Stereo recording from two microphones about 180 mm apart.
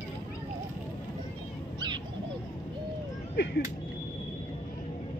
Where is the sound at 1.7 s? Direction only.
25° right (ahead or behind).